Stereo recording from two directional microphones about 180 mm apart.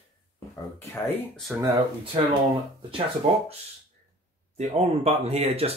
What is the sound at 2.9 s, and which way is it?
Speech, 30° right (ahead or behind).